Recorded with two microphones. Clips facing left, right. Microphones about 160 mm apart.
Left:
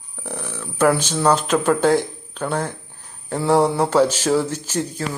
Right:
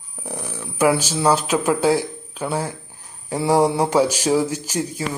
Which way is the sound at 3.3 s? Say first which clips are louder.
Even; 10° right (ahead or behind).